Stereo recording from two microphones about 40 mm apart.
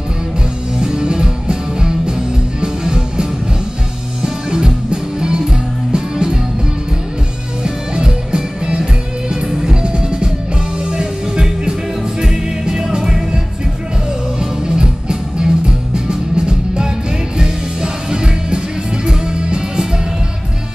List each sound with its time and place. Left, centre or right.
0.7 s music: right
5.9 s music: right
7.6 s music: right
14.4 s music: right